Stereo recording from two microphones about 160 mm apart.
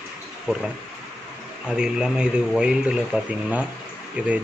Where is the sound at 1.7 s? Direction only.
5° right (ahead or behind).